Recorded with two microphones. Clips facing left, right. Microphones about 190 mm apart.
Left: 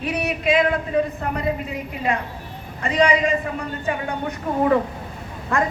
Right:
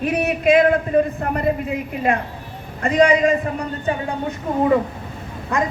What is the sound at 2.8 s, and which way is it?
Speech, 50° right (ahead or behind).